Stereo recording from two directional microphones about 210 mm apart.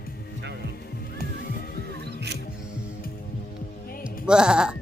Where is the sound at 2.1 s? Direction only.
55° right (ahead or behind).